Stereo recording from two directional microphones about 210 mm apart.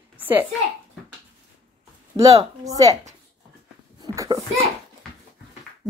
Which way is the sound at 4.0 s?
15° right (ahead or behind).